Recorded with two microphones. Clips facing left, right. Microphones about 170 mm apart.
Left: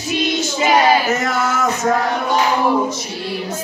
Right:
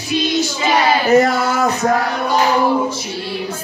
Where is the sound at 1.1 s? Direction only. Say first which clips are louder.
Right 6 dB; 35° right (ahead or behind).